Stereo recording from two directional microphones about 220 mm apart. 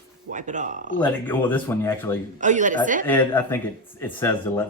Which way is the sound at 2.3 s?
35° right (ahead or behind).